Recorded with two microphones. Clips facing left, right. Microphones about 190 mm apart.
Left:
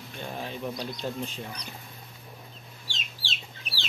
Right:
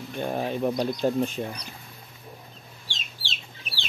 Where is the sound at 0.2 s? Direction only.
50° right (ahead or behind).